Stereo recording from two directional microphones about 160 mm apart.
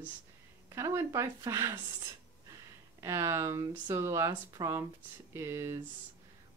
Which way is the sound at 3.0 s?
20° right (ahead or behind).